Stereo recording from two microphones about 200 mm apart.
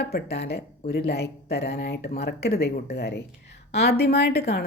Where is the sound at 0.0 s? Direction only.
55° left (ahead or behind).